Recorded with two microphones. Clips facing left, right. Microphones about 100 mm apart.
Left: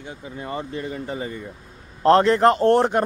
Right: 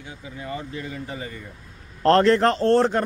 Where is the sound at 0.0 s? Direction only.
45° left (ahead or behind).